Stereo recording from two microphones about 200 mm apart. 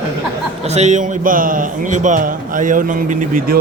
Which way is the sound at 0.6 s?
35° right (ahead or behind).